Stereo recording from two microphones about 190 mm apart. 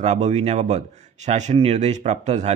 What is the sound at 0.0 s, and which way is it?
A man's voice, 35° right (ahead or behind).